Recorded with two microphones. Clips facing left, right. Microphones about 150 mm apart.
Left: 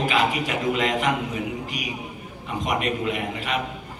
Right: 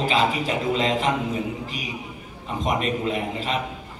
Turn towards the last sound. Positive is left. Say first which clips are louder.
# right 1 dB
turn(degrees=-30)  # may be behind; listen again after turning